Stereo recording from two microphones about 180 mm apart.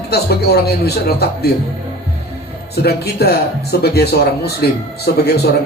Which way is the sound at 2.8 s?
60° left (ahead or behind).